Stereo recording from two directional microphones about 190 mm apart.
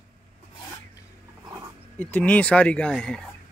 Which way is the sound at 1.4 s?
20° right (ahead or behind).